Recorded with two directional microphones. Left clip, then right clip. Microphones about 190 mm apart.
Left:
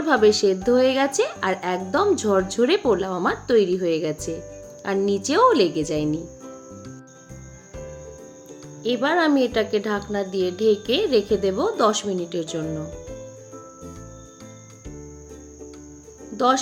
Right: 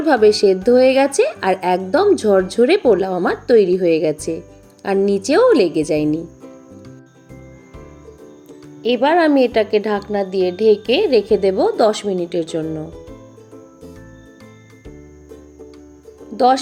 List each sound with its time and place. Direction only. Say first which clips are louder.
0.0 s speech: right 5 dB; 15° right (ahead or behind)
8.8 s speech: right 6 dB; 10° right (ahead or behind)